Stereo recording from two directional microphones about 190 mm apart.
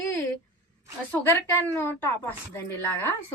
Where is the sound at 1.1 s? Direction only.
10° left (ahead or behind).